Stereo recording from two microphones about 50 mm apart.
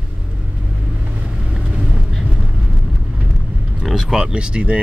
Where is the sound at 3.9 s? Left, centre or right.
Centre.